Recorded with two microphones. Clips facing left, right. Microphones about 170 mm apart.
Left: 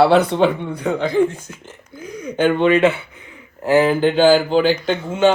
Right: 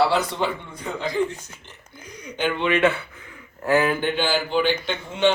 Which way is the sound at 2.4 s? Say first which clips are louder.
Left 8 dB; 45° left (ahead or behind).